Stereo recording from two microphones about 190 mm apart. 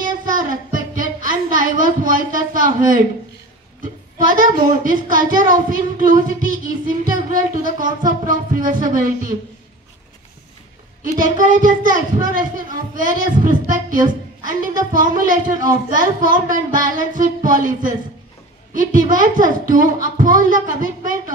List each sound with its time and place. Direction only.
0.3 s a sound: 45° right (ahead or behind)
4.8 s speech: 45° right (ahead or behind)
11.1 s speech: 45° right (ahead or behind)